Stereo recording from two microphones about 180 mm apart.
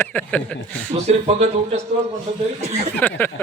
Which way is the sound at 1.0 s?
35° right (ahead or behind).